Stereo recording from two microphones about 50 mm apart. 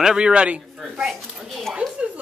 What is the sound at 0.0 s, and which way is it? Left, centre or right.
Speech, centre.